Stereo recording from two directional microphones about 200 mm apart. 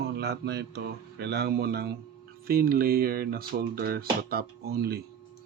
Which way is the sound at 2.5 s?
50° right (ahead or behind).